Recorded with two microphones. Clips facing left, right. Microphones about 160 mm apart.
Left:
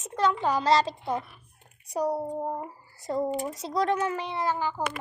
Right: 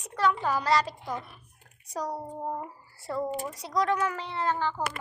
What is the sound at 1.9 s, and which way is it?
A woman's voice, 10° left (ahead or behind).